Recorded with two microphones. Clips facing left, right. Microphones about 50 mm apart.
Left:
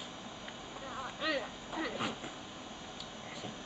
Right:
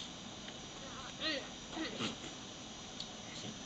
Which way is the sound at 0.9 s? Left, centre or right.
Centre.